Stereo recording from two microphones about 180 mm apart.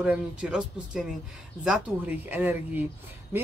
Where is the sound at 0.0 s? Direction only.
5° right (ahead or behind).